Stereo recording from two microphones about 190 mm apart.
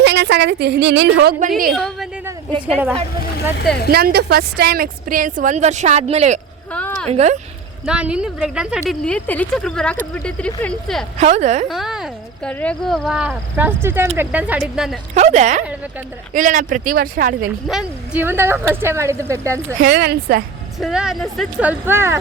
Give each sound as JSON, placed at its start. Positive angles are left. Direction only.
{"t": 0.0, "sound": "a woman's voice", "side_deg": -65}
{"t": 1.4, "sound": "a woman's voice", "side_deg": -45}
{"t": 1.7, "sound": "a woman's voice", "side_deg": 0}
{"t": 3.8, "sound": "a woman's voice", "side_deg": -55}
{"t": 6.7, "sound": "a sound", "side_deg": 10}
{"t": 7.1, "sound": "speech", "side_deg": -35}
{"t": 7.9, "sound": "speech", "side_deg": -5}
{"t": 11.2, "sound": "speech", "side_deg": -35}
{"t": 11.7, "sound": "speech", "side_deg": 0}
{"t": 15.1, "sound": "a woman's voice", "side_deg": -40}
{"t": 17.7, "sound": "speech", "side_deg": -5}
{"t": 19.8, "sound": "a woman's voice", "side_deg": -55}
{"t": 20.7, "sound": "speech", "side_deg": -5}